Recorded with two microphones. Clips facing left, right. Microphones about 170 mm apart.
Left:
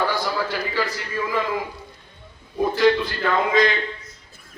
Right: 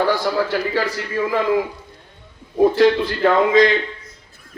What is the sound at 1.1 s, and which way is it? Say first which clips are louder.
Speech: right 6 dB; 60° right (ahead or behind).